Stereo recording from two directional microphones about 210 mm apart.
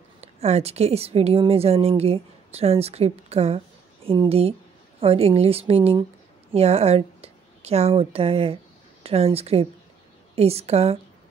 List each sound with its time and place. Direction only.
0.2 s a woman's voice: 30° right (ahead or behind)